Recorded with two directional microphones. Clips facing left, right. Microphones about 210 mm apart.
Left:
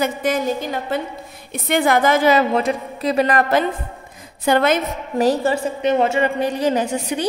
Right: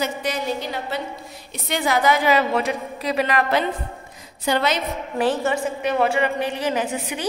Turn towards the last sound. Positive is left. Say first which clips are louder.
# left 4 dB
turn(degrees=40)  # may be behind; listen again after turning